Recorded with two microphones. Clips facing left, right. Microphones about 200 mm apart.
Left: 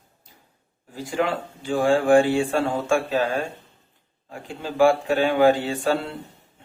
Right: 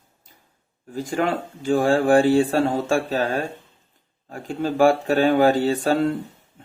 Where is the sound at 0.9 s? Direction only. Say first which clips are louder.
Right 2 dB; 45° right (ahead or behind).